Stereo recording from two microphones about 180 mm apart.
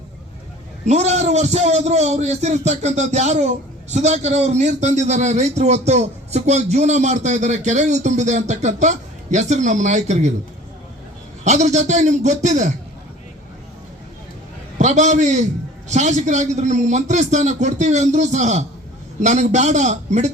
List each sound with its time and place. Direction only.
0.9 s a man's voice: 40° right (ahead or behind)
11.4 s a man's voice: 40° right (ahead or behind)
14.8 s a man's voice: 40° right (ahead or behind)